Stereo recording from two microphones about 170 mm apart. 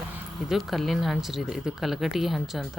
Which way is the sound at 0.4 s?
Centre (ahead or behind).